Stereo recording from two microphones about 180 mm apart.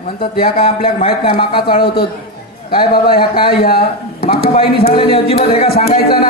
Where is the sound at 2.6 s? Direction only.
55° left (ahead or behind).